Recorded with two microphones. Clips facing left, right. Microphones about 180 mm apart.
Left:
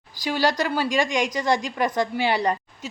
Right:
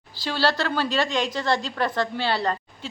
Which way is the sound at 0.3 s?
15° left (ahead or behind).